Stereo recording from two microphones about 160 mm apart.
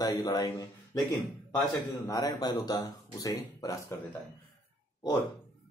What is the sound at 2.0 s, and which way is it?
Speech, 25° left (ahead or behind).